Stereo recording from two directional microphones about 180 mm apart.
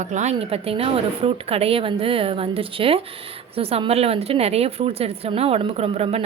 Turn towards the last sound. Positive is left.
turn(degrees=-35)  # may be behind; listen again after turning